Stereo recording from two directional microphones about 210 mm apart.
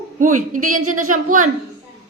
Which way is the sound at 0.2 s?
40° right (ahead or behind).